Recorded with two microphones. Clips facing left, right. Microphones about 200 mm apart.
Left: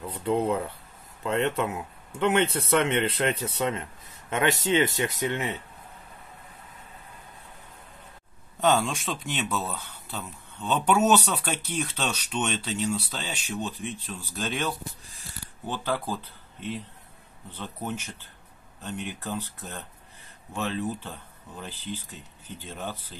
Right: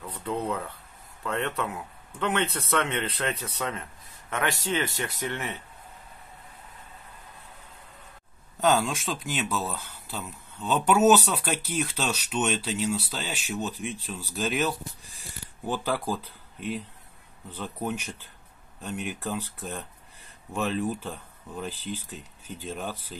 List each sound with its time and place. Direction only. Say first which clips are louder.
0.0 s speech: left 5 dB; 25° left (ahead or behind)
8.5 s speech: even; centre (ahead or behind)